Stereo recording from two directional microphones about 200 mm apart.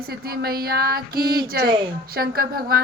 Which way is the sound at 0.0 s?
50° right (ahead or behind).